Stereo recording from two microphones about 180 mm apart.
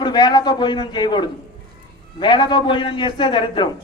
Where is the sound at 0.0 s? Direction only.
25° left (ahead or behind).